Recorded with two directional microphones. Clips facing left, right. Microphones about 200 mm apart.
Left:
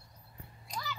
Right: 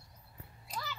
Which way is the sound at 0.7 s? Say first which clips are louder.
Left 1 dB; centre (ahead or behind).